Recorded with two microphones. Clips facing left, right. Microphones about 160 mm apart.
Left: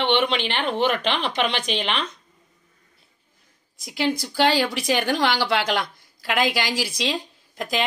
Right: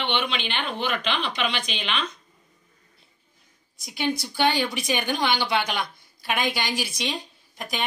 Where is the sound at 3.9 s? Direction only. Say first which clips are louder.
Left 3 dB; 90° left.